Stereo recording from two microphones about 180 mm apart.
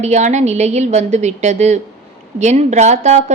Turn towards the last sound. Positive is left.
turn(degrees=-40)  # may be behind; listen again after turning